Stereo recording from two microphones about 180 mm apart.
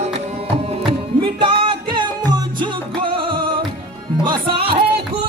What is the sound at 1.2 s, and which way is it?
Music, 30° right (ahead or behind).